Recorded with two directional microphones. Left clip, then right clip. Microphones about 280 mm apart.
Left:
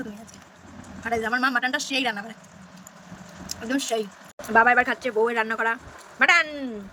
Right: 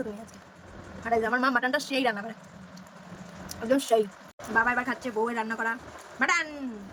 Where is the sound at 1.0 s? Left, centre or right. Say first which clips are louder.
Left 1 dB; centre.